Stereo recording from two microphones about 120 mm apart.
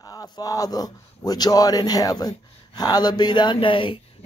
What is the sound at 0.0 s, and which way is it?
A man's voice, 35° left (ahead or behind).